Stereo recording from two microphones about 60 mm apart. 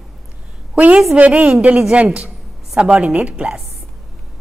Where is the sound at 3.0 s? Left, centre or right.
Right.